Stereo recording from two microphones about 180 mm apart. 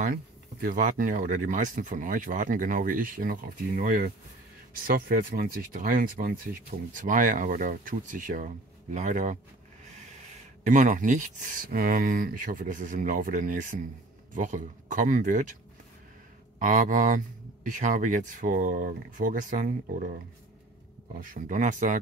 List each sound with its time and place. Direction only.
0.0 s speech: 50° right (ahead or behind)
16.5 s speech: 45° right (ahead or behind)
21.3 s speech: 45° right (ahead or behind)